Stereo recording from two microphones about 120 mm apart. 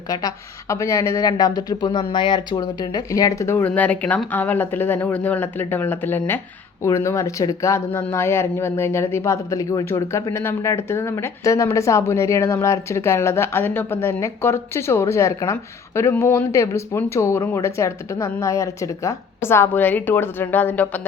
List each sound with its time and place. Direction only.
0.1 s speech: 30° left (ahead or behind); by 21.0 s 15° left (ahead or behind)